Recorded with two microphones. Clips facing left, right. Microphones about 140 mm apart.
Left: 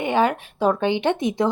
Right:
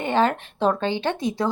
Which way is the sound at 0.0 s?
15° left (ahead or behind).